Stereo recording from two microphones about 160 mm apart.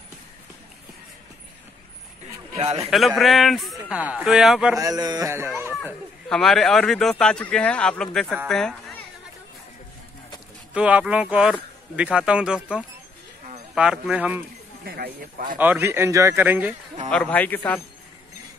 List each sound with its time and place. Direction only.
2.5 s a man's voice: 40° right (ahead or behind)
3.2 s speech: centre (ahead or behind)
4.7 s speech: 20° right (ahead or behind)
6.2 s speech: 5° left (ahead or behind)
10.7 s speech: 10° right (ahead or behind)
14.9 s speech: 65° right (ahead or behind)
15.6 s speech: 15° right (ahead or behind)
17.1 s a man's voice: 10° left (ahead or behind)